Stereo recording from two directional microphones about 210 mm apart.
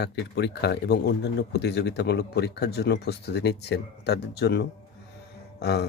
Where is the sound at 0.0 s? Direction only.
55° left (ahead or behind).